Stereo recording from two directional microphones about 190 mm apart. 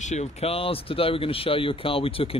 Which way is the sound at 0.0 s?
35° left (ahead or behind).